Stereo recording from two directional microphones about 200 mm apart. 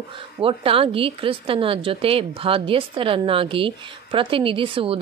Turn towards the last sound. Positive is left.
turn(degrees=-25)  # may be behind; listen again after turning